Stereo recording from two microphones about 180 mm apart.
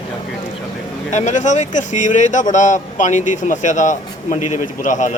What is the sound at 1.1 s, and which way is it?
A man's voice, 40° left (ahead or behind).